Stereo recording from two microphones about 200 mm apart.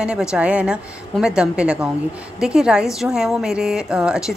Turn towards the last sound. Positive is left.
turn(degrees=-5)  # may be behind; listen again after turning